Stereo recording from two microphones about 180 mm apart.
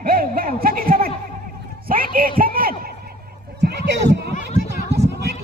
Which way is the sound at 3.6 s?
70° right (ahead or behind).